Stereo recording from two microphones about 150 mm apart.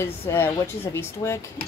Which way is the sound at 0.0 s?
15° left (ahead or behind).